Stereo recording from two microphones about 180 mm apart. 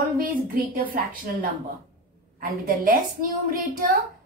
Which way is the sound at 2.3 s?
50° right (ahead or behind).